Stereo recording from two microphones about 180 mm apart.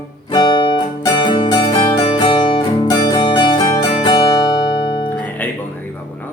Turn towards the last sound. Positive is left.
turn(degrees=10)  # may be behind; listen again after turning